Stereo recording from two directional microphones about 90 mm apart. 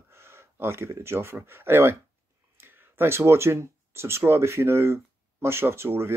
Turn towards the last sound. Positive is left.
turn(degrees=-30)  # may be behind; listen again after turning